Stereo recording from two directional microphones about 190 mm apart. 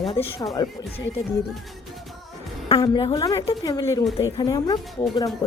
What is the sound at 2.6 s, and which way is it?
Speech, 25° left (ahead or behind).